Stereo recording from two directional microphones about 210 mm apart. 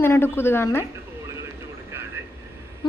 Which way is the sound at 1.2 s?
15° right (ahead or behind).